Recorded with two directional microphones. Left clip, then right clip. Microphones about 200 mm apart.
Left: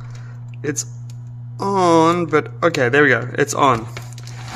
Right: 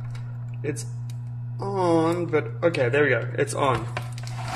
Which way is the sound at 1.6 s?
45° left (ahead or behind).